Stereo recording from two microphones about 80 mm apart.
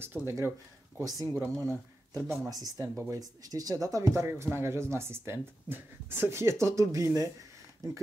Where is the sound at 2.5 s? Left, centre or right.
Right.